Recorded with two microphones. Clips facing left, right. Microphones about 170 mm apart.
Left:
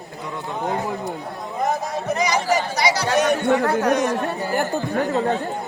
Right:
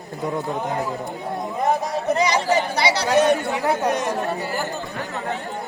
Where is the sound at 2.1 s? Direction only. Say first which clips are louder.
Right 1 dB; 30° right (ahead or behind).